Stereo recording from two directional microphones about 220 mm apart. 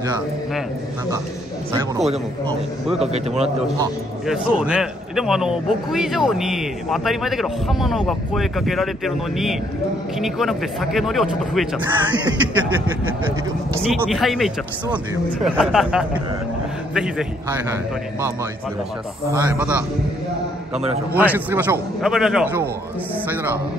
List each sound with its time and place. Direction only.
2.0 s a man's voice: centre (ahead or behind)
3.1 s a man's voice: 30° right (ahead or behind)
4.3 s a man's voice: 5° right (ahead or behind)
13.9 s a man's voice: centre (ahead or behind)
19.3 s a man's voice: 10° right (ahead or behind)
21.1 s a man's voice: 10° right (ahead or behind)